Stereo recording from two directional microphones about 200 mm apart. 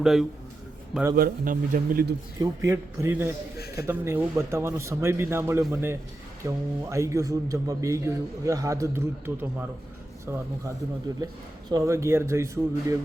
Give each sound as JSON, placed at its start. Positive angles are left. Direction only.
{"t": 0.0, "sound": "a man's voice", "side_deg": 0}
{"t": 1.1, "sound": "a man's voice", "side_deg": -45}
{"t": 2.4, "sound": "a man's voice", "side_deg": -15}